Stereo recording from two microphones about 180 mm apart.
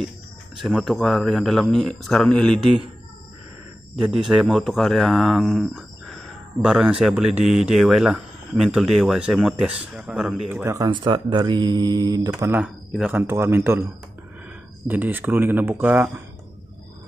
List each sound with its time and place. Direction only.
0.6 s speech: centre (ahead or behind)
3.9 s speech: centre (ahead or behind)
10.6 s speech: 20° right (ahead or behind)
14.9 s speech: 10° right (ahead or behind)